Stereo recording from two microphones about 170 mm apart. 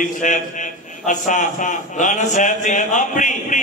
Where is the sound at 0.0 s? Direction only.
50° left (ahead or behind).